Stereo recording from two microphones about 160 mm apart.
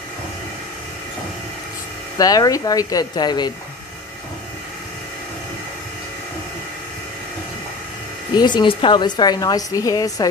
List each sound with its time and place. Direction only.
2.1 s a woman's voice: 25° left (ahead or behind)
8.4 s a woman's voice: 25° left (ahead or behind)